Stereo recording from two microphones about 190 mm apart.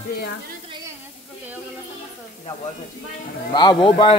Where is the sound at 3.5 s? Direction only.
25° left (ahead or behind).